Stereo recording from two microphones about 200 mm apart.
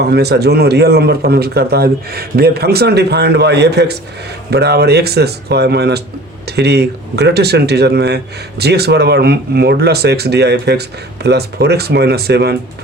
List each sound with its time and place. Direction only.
0.0 s speech: 55° right (ahead or behind)